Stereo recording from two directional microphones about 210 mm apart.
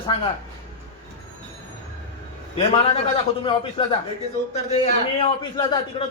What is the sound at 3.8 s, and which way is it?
A man's voice, 25° left (ahead or behind).